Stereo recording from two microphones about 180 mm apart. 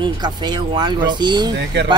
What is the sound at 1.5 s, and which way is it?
Speech, 70° right (ahead or behind).